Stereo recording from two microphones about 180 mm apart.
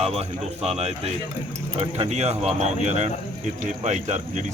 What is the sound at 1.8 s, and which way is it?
Speech, 35° right (ahead or behind).